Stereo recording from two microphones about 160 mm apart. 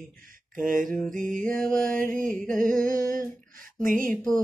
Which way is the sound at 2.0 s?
55° right (ahead or behind).